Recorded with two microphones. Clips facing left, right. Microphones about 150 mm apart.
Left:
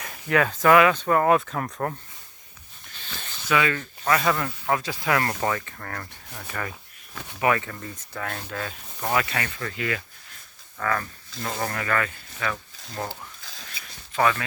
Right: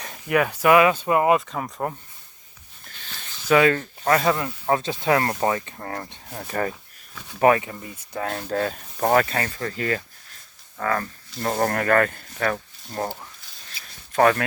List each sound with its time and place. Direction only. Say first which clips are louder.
0.3 s speech: right 1 dB; 15° right (ahead or behind)
1.4 s speech: even; centre (ahead or behind)
3.5 s speech: right 6 dB; 40° right (ahead or behind)
4.4 s speech: right 3 dB; 25° right (ahead or behind)
7.6 s speech: right 1 dB; 15° right (ahead or behind)
8.1 s speech: right 8 dB; 30° right (ahead or behind)
11.7 s speech: right 7 dB; 50° right (ahead or behind)
13.0 s speech: right 4 dB; 30° right (ahead or behind)
14.1 s speech: right 5 dB; 50° right (ahead or behind)